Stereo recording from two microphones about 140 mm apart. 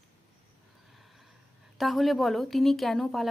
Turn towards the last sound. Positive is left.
turn(degrees=0)  # may be behind; listen again after turning